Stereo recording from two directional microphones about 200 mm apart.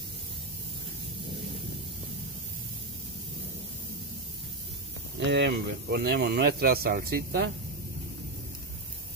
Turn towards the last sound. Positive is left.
turn(degrees=-50)  # may be behind; listen again after turning